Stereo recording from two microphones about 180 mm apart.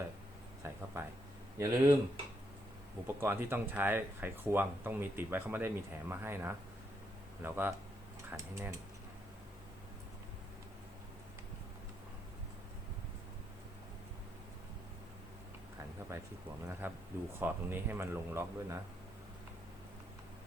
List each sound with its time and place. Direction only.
0.9 s speech: 15° right (ahead or behind)
3.2 s speech: 10° right (ahead or behind)
16.1 s a sound: 15° right (ahead or behind)
16.8 s speech: 10° right (ahead or behind)